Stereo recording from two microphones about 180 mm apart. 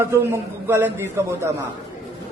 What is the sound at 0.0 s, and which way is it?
A man's voice, 15° right (ahead or behind).